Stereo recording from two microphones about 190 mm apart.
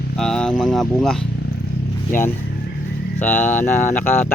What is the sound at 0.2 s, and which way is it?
Speech, 5° left (ahead or behind).